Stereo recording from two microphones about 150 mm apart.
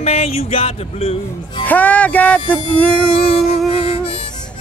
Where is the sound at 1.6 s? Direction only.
10° left (ahead or behind).